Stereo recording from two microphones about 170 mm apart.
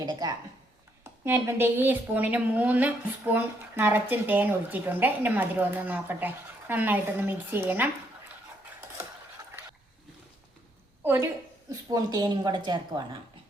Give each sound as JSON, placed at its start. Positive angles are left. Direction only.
{"t": 0.0, "sound": "a woman's voice", "side_deg": -25}
{"t": 11.0, "sound": "a woman's voice", "side_deg": -10}